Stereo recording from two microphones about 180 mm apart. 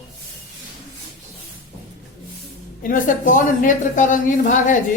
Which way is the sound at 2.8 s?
45° left (ahead or behind).